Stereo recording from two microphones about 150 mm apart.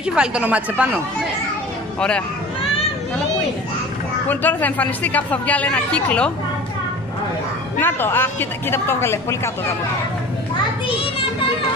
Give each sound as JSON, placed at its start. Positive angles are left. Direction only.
{"t": 0.0, "sound": "speech", "side_deg": -5}
{"t": 2.0, "sound": "speech", "side_deg": 5}
{"t": 4.3, "sound": "a woman's voice", "side_deg": 10}
{"t": 7.8, "sound": "a woman's voice", "side_deg": 15}